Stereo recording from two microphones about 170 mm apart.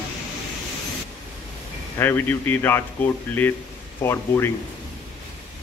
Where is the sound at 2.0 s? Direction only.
15° left (ahead or behind).